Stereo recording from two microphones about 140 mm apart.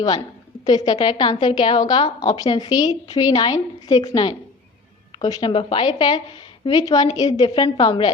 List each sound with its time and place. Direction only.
0.6 s a woman's voice: 30° left (ahead or behind)